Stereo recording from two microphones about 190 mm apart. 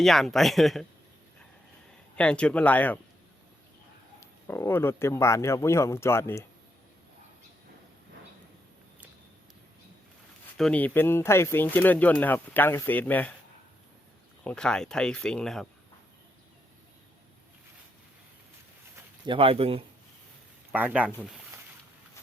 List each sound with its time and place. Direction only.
0.0 s speech: centre (ahead or behind)
2.1 s speech: 5° left (ahead or behind)
4.2 s speech: 15° left (ahead or behind)
10.6 s speech: 5° left (ahead or behind)
14.4 s speech: 5° left (ahead or behind)
19.2 s speech: 30° right (ahead or behind)
20.7 s speech: 5° right (ahead or behind)